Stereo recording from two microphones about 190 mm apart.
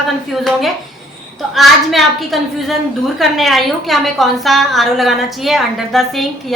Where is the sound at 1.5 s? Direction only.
Centre (ahead or behind).